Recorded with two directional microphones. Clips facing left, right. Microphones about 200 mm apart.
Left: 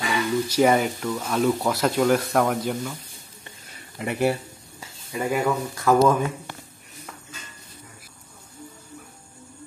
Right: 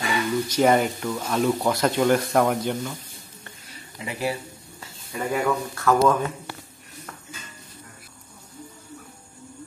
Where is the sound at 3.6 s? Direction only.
55° left (ahead or behind).